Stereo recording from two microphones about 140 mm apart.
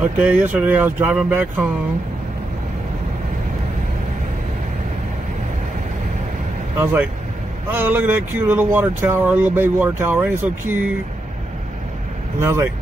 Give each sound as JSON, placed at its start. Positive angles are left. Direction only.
{"t": 0.0, "sound": "speech", "side_deg": -10}
{"t": 6.8, "sound": "speech", "side_deg": -15}
{"t": 12.4, "sound": "speech", "side_deg": -20}